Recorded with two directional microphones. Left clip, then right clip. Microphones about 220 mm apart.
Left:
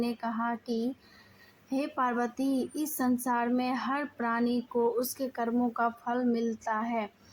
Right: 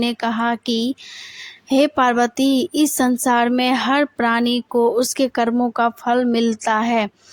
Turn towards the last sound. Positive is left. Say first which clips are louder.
# right 14 dB
turn(degrees=-45)  # may be behind; listen again after turning